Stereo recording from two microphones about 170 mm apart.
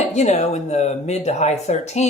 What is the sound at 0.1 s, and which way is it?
Speech, 40° left (ahead or behind).